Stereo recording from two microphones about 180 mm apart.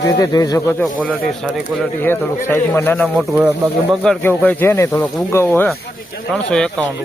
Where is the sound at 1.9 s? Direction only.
10° left (ahead or behind).